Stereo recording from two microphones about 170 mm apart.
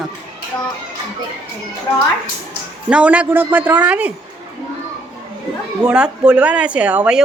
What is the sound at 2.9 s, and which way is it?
Speech, 5° right (ahead or behind).